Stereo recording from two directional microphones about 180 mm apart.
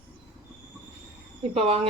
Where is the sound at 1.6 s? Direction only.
35° right (ahead or behind).